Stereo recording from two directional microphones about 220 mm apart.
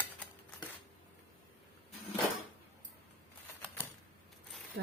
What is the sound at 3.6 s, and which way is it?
Typewriter, 10° left (ahead or behind).